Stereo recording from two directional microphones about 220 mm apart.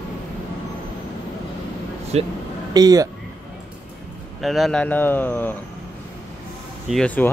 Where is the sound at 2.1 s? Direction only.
30° right (ahead or behind).